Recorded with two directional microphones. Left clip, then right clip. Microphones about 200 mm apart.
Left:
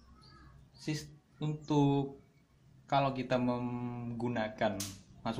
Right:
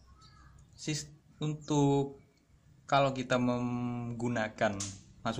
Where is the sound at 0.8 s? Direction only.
25° right (ahead or behind).